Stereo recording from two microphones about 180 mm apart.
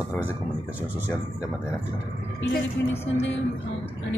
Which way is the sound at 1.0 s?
20° left (ahead or behind).